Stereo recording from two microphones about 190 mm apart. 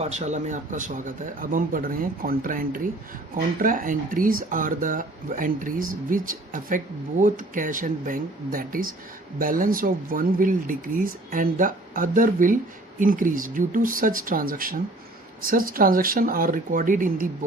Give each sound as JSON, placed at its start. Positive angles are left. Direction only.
{"t": 0.0, "sound": "speech", "side_deg": -35}